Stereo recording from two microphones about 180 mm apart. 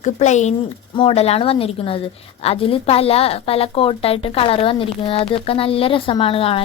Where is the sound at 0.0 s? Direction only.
40° left (ahead or behind).